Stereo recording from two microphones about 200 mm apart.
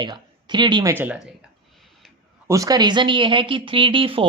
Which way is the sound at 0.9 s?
5° right (ahead or behind).